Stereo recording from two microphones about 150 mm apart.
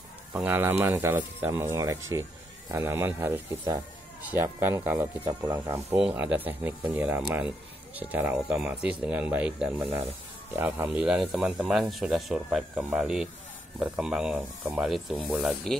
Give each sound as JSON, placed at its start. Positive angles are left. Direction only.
{"t": 0.3, "sound": "speech", "side_deg": -15}